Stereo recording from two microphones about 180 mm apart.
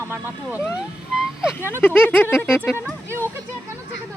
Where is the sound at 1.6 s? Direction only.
10° left (ahead or behind).